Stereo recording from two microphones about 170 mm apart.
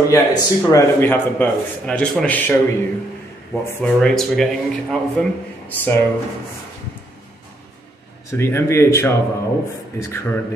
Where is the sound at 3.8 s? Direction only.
5° left (ahead or behind).